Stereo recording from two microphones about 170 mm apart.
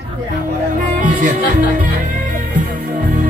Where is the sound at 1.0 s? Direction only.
45° right (ahead or behind).